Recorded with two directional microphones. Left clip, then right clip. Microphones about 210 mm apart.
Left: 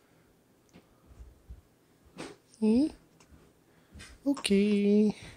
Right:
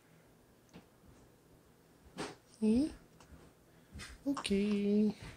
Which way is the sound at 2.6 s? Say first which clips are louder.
Left 6 dB; 40° left (ahead or behind).